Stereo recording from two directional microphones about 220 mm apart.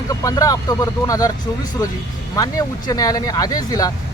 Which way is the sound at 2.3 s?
15° left (ahead or behind).